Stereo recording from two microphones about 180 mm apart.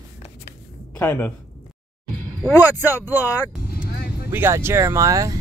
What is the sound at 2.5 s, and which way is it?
Speech, 15° left (ahead or behind).